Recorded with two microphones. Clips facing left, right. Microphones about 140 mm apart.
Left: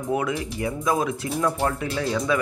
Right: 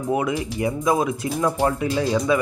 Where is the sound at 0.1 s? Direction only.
10° right (ahead or behind).